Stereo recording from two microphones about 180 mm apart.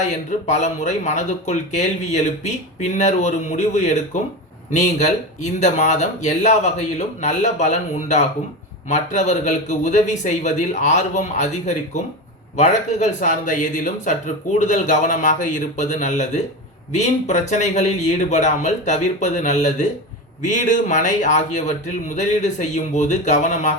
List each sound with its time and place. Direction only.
0.0 s speech: 40° left (ahead or behind)